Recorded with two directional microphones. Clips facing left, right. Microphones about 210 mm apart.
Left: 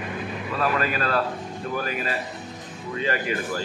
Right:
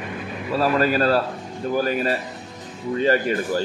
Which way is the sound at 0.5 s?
35° right (ahead or behind).